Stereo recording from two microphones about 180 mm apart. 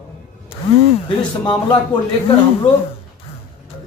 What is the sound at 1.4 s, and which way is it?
Speech, 25° left (ahead or behind).